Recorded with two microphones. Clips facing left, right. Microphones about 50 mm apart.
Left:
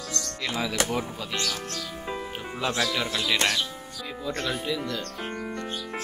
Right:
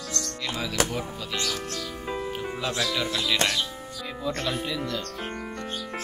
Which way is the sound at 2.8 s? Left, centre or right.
Left.